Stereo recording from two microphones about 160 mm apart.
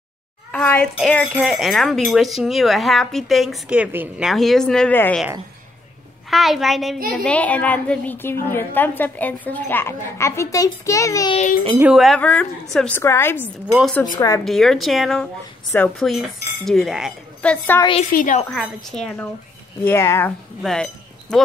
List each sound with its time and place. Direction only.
0.5 s a sound: 5° left (ahead or behind)
0.9 s speech: centre (ahead or behind)
6.3 s a woman's voice: centre (ahead or behind); by 11.3 s 20° left (ahead or behind)
11.8 s speech: 5° right (ahead or behind)
12.2 s a woman's voice: 10° left (ahead or behind)
14.4 s speech: centre (ahead or behind)
17.4 s a woman's voice: 10° left (ahead or behind)
18.1 s a woman's voice: 55° left (ahead or behind)
18.5 s speech: 5° left (ahead or behind)
19.8 s a woman's voice: 15° left (ahead or behind)
20.6 s chink: 5° left (ahead or behind)